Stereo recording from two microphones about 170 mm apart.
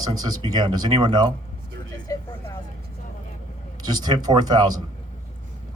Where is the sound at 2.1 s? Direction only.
20° left (ahead or behind).